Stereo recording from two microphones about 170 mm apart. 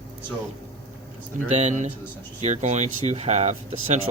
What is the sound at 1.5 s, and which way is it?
Speech, 40° right (ahead or behind).